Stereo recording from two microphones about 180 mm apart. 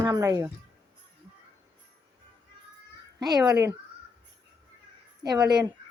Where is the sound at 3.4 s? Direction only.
20° right (ahead or behind).